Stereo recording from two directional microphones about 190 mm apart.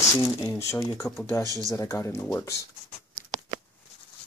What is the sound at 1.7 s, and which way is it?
Speech, 15° left (ahead or behind).